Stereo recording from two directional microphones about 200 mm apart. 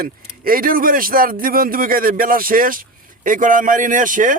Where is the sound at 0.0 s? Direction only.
45° right (ahead or behind).